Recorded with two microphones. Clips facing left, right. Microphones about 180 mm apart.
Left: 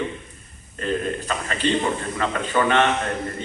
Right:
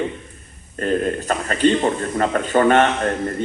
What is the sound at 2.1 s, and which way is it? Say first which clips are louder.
Speech: right 6 dB; 45° right (ahead or behind).